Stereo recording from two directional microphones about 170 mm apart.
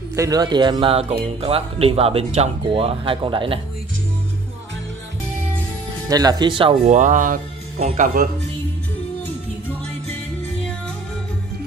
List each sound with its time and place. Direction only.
0.1 s speech: 20° right (ahead or behind)
6.0 s speech: 25° right (ahead or behind); by 7.3 s 50° right (ahead or behind)
7.8 s speech: 40° right (ahead or behind)